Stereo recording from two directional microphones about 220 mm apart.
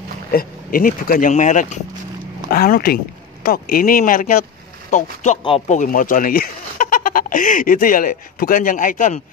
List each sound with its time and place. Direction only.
0.3 s speech: 40° left (ahead or behind)